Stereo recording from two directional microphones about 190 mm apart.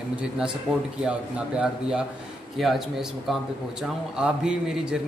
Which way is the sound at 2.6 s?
Centre (ahead or behind).